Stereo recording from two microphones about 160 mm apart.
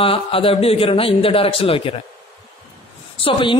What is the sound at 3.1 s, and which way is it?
Speech, 35° left (ahead or behind).